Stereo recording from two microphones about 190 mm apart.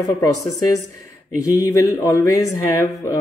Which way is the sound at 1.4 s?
15° left (ahead or behind).